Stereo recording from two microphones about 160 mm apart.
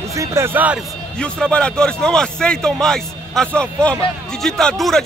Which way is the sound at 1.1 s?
5° left (ahead or behind).